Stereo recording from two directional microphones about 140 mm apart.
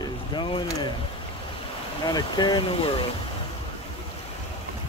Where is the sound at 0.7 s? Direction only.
25° left (ahead or behind).